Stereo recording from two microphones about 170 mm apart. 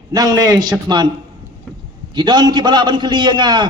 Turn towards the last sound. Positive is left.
turn(degrees=-25)  # may be behind; listen again after turning